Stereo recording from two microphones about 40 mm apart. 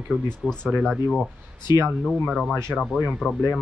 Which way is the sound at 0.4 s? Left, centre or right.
Centre.